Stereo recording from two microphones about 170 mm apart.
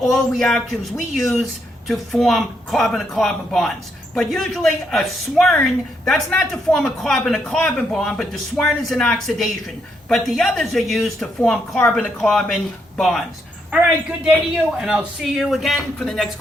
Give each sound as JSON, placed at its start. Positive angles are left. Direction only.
{"t": 0.0, "sound": "a man's voice", "side_deg": 0}
{"t": 14.3, "sound": "a man's voice", "side_deg": 0}